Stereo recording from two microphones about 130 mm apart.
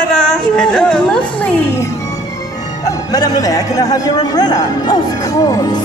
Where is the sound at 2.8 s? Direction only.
30° left (ahead or behind).